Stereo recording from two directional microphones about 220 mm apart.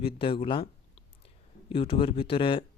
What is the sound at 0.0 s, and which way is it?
Speech, 25° left (ahead or behind).